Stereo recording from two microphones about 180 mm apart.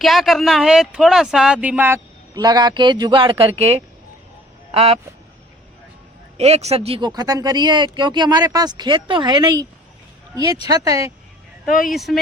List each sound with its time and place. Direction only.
0.0 s speech: centre (ahead or behind); by 3.8 s 35° right (ahead or behind)
4.7 s quack: 35° right (ahead or behind)
6.3 s speech: 35° right (ahead or behind)
10.7 s speech: 20° right (ahead or behind)
11.6 s speech: centre (ahead or behind)